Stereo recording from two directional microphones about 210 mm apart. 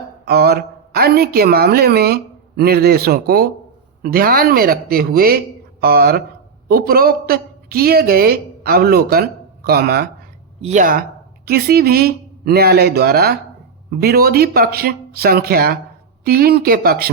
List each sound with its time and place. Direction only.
0.3 s a woman's voice: 50° right (ahead or behind)
10.6 s a woman's voice: 35° right (ahead or behind)